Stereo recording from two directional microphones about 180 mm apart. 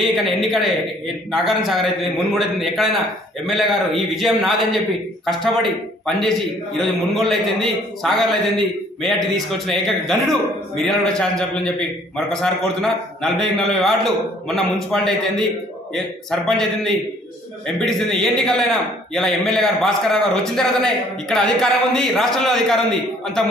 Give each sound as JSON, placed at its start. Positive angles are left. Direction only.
{"t": 0.1, "sound": "a man's voice", "side_deg": 0}